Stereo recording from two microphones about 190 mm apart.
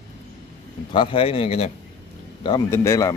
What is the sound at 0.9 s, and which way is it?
Speech, 30° left (ahead or behind).